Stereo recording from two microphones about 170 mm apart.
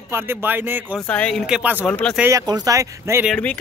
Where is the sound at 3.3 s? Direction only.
5° left (ahead or behind).